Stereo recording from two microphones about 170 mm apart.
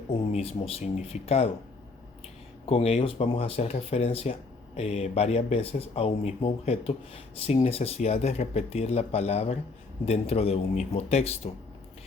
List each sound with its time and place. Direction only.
0.3 s speech: 35° left (ahead or behind)
2.6 s speech: 35° left (ahead or behind)